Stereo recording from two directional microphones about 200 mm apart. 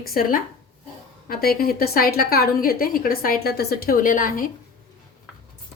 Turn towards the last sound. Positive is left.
turn(degrees=45)  # may be behind; listen again after turning